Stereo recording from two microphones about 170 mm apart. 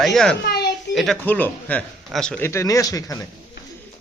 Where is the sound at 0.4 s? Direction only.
65° left (ahead or behind).